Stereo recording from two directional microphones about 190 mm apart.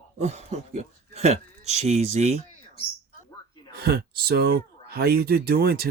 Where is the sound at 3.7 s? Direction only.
55° right (ahead or behind).